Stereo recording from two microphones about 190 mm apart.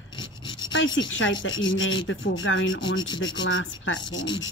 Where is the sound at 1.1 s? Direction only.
85° left.